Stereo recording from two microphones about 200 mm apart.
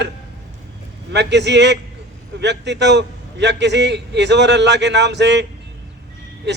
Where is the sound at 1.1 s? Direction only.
60° right (ahead or behind).